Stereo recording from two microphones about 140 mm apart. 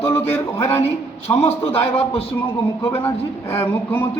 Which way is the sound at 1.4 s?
45° left (ahead or behind).